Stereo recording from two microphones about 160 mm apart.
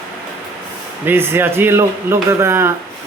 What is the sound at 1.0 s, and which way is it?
Speech, 15° right (ahead or behind).